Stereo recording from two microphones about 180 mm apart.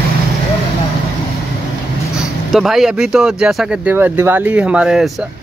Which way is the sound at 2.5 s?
Centre (ahead or behind).